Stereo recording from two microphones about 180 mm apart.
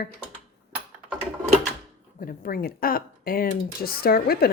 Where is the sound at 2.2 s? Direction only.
50° left (ahead or behind).